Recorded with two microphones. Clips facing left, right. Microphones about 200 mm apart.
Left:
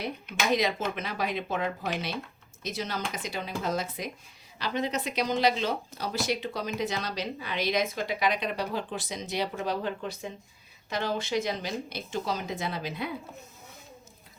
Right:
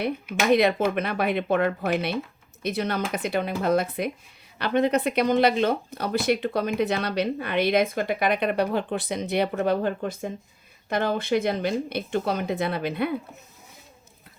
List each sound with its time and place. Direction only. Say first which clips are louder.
0.3 s speech: right 7 dB; 60° right (ahead or behind)